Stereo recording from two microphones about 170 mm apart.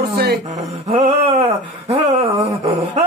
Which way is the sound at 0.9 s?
35° right (ahead or behind).